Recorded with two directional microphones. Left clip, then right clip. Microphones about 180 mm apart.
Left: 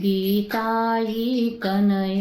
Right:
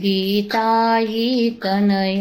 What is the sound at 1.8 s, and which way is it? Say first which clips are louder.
Female singing: right 5 dB; 30° left (ahead or behind).